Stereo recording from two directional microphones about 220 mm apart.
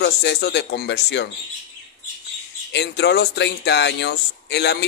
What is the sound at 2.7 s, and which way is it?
Speech, 50° left (ahead or behind).